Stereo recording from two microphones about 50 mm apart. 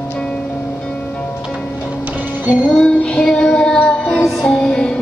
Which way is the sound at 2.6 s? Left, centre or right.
Centre.